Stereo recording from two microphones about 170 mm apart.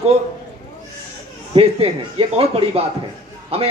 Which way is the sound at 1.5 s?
35° right (ahead or behind).